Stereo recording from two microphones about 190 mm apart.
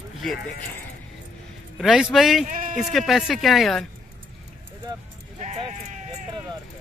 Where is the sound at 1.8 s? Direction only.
Centre (ahead or behind).